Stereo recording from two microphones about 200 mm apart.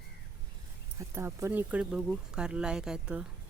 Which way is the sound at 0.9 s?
15° right (ahead or behind).